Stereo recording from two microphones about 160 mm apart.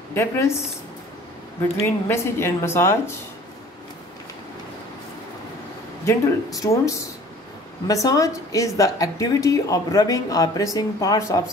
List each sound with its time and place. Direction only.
0.1 s speech: 15° left (ahead or behind)
1.8 s speech: 15° left (ahead or behind)
6.0 s a woman's voice: 20° left (ahead or behind)